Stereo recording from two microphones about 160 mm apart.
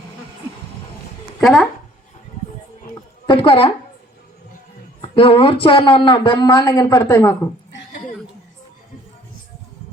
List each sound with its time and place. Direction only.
1.4 s speech: centre (ahead or behind)
3.2 s speech: 35° left (ahead or behind)
4.9 s a sound: 35° left (ahead or behind)
5.6 s speech: 35° left (ahead or behind); by 7.3 s 15° left (ahead or behind)